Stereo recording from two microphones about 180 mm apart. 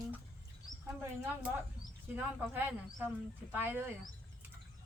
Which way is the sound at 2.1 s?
10° right (ahead or behind).